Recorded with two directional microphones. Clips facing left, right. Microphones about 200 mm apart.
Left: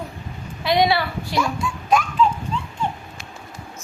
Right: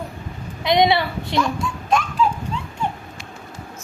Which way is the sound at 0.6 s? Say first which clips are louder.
Right 2 dB; 20° right (ahead or behind).